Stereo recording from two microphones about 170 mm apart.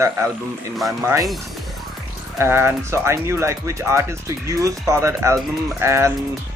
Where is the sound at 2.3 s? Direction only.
15° right (ahead or behind).